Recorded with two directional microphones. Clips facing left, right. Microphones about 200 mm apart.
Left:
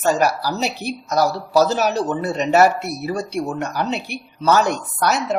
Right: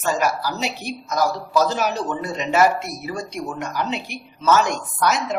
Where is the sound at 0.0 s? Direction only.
40° left (ahead or behind).